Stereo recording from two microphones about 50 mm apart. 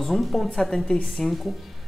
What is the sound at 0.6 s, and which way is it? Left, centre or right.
Speech, centre.